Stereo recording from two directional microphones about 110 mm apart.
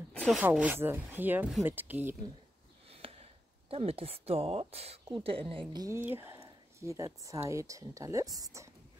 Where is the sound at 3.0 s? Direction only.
60° right (ahead or behind).